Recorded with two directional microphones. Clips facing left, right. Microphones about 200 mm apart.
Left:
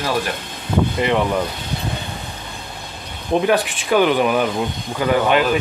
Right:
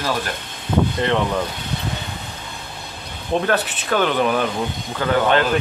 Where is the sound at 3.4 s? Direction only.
15° left (ahead or behind).